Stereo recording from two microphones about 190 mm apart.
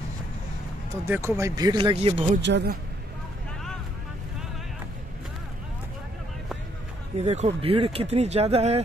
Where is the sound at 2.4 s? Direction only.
65° right (ahead or behind).